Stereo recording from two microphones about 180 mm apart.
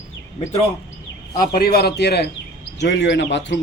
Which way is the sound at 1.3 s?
55° left (ahead or behind).